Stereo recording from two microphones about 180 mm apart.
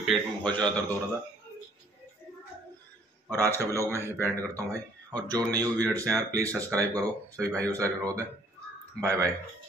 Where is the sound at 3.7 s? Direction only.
15° right (ahead or behind).